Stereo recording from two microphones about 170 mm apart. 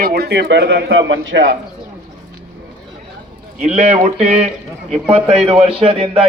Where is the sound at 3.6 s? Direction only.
40° right (ahead or behind).